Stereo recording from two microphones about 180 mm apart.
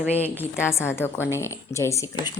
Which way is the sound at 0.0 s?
10° right (ahead or behind).